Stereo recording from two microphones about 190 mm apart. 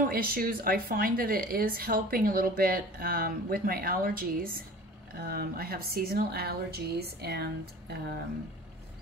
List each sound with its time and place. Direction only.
0.1 s a woman's voice: 50° right (ahead or behind)